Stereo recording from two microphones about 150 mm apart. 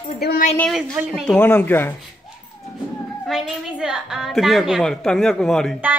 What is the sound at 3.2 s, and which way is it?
A woman's voice, 5° right (ahead or behind).